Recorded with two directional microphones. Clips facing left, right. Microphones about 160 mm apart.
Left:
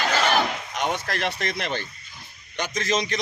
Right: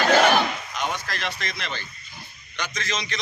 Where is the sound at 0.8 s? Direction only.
60° left (ahead or behind).